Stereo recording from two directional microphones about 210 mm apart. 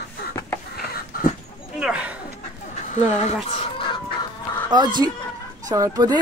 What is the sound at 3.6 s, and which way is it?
Chicken, 25° left (ahead or behind).